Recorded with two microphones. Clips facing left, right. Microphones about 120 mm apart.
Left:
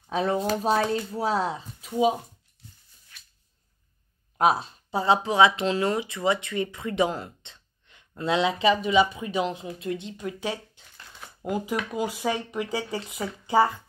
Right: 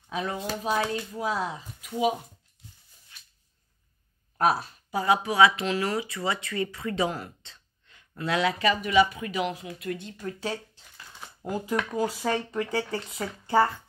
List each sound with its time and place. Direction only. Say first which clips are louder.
0.1 s speech: left 6 dB; 35° left (ahead or behind)
4.4 s speech: left 2 dB; 20° left (ahead or behind)